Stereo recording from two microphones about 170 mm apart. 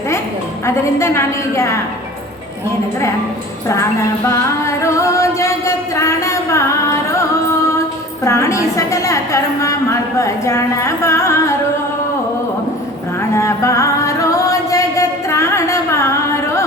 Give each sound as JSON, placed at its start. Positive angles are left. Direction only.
{"t": 0.6, "sound": "a woman's voice", "side_deg": 15}
{"t": 4.3, "sound": "singing", "side_deg": 15}
{"t": 7.1, "sound": "music", "side_deg": 15}
{"t": 8.2, "sound": "a woman's voice", "side_deg": 15}
{"t": 13.3, "sound": "music", "side_deg": 15}